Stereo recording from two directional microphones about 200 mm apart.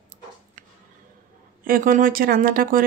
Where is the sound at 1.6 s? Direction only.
45° right (ahead or behind).